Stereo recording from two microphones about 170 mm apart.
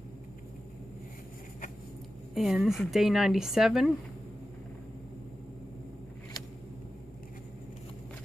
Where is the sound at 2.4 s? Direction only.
Centre (ahead or behind).